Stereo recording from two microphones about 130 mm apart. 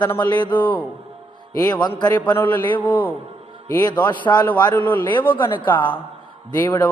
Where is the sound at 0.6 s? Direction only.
15° left (ahead or behind).